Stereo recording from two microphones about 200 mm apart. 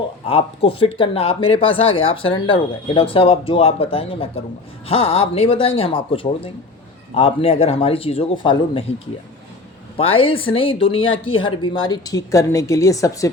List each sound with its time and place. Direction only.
0.3 s speech: 30° left (ahead or behind)
10.0 s speech: 25° left (ahead or behind)